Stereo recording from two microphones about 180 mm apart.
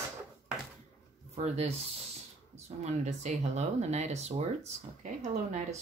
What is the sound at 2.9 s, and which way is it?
Speech, 40° right (ahead or behind).